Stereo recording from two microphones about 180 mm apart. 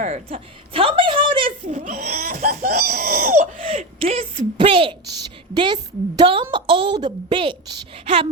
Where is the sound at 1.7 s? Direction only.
45° right (ahead or behind).